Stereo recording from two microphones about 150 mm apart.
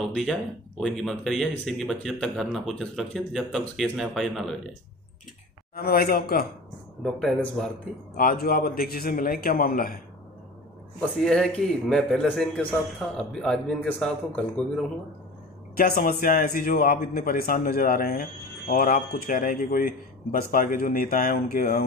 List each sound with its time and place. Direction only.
0.1 s a man's voice: centre (ahead or behind)
5.8 s a man's voice: 90° left
7.0 s a man's voice: centre (ahead or behind)
8.2 s a man's voice: 85° left
11.0 s a man's voice: 5° left (ahead or behind)
15.7 s a man's voice: 75° left (ahead or behind)